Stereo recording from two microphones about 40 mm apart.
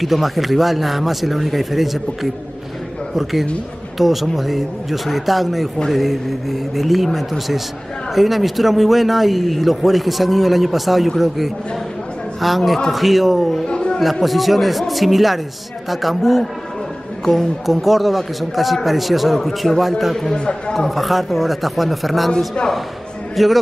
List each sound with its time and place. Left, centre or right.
0.0 s a man's voice: centre
13.7 s a sound: left
14.2 s a man's voice: centre
17.2 s speech: centre
17.6 s a man's voice: centre
20.3 s speech: left
20.9 s a man's voice: centre
23.3 s a man's voice: centre